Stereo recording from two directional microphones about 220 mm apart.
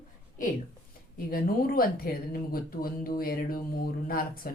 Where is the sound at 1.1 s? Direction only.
40° left (ahead or behind).